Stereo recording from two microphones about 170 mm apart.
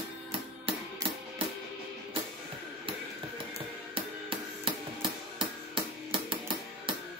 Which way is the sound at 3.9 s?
30° right (ahead or behind).